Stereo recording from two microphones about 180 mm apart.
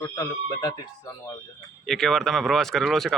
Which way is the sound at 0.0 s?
15° left (ahead or behind).